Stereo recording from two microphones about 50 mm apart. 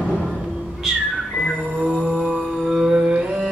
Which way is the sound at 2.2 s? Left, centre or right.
Centre.